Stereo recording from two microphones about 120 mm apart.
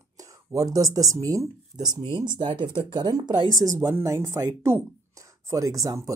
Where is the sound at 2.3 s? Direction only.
40° right (ahead or behind).